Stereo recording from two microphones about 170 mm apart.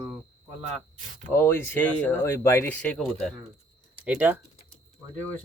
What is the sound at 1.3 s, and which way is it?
Speech, 10° left (ahead or behind).